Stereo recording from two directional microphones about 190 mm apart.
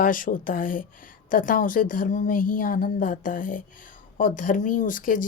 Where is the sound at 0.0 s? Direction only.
45° left (ahead or behind).